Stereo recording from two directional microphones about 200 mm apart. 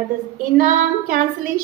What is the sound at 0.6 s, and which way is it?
Speech, 40° right (ahead or behind).